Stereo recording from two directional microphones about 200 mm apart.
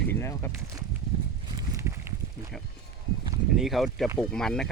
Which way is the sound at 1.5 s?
15° right (ahead or behind).